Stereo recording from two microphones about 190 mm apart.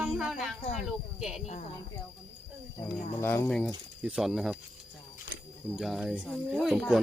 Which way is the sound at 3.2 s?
15° left (ahead or behind).